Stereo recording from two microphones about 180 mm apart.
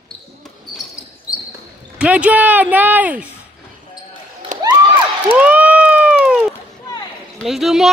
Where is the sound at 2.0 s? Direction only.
5° right (ahead or behind).